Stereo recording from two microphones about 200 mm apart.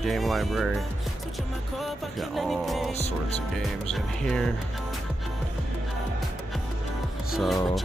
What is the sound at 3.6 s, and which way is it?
Speech, centre (ahead or behind).